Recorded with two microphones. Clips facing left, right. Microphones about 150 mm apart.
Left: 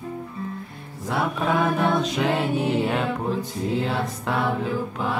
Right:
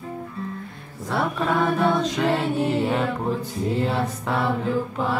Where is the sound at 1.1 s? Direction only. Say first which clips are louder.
Even; 5° left (ahead or behind).